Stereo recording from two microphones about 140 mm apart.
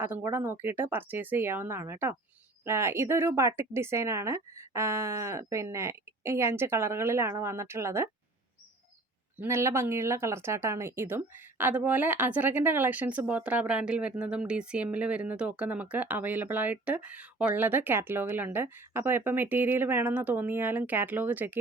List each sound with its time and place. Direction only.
0.0 s speech: 15° right (ahead or behind)
9.4 s speech: 20° right (ahead or behind)